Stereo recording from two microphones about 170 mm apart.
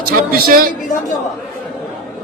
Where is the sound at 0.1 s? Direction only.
60° right (ahead or behind).